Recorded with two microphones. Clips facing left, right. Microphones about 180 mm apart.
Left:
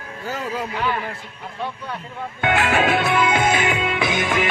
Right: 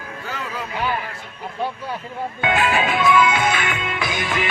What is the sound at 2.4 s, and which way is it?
Music, 65° left (ahead or behind).